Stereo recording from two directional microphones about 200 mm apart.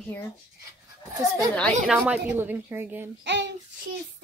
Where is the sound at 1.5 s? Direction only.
5° left (ahead or behind).